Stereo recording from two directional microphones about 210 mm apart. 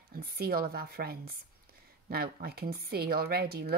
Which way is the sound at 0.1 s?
50° right (ahead or behind).